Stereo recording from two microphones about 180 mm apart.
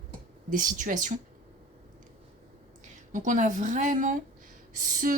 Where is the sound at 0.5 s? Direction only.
45° right (ahead or behind).